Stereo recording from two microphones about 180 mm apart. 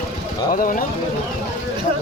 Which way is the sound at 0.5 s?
50° left (ahead or behind).